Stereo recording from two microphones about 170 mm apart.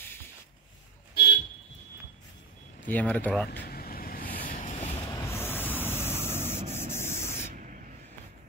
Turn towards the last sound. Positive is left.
turn(degrees=-50)  # may be behind; listen again after turning